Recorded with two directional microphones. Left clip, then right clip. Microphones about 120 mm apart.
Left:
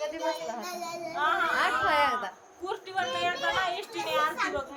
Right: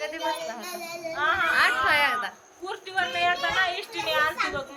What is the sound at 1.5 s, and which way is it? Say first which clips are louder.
Speech: right 4 dB; 30° left (ahead or behind).